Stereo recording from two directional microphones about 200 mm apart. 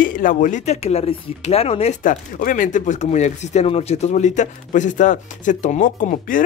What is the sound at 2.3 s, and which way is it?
Speech, 45° left (ahead or behind).